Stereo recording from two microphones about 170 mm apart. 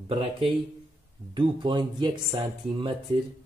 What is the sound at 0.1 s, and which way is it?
Speech, 30° right (ahead or behind).